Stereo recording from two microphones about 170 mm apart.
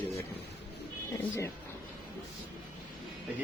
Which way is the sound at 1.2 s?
15° left (ahead or behind).